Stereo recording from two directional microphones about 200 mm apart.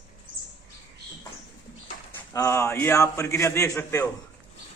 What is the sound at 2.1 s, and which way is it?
A man's voice, 15° left (ahead or behind).